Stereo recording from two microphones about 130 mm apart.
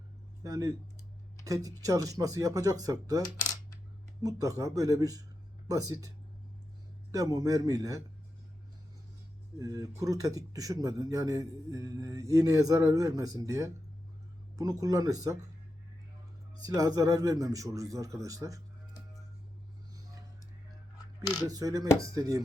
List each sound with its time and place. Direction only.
0.4 s a man's voice: 25° right (ahead or behind)
9.6 s a man's voice: 25° right (ahead or behind)
16.6 s a man's voice: 30° right (ahead or behind)
21.4 s a man's voice: 30° right (ahead or behind)